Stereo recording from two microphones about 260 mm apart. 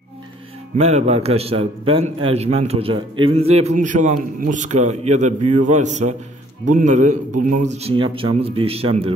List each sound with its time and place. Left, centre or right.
0.7 s a man's voice: right